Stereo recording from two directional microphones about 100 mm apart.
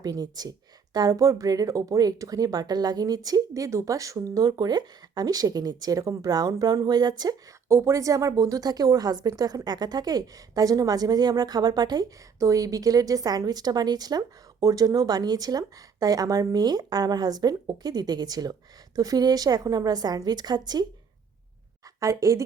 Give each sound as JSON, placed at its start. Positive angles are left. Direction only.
{"t": 0.0, "sound": "speech", "side_deg": -40}
{"t": 7.7, "sound": "speech", "side_deg": -30}
{"t": 22.0, "sound": "speech", "side_deg": -35}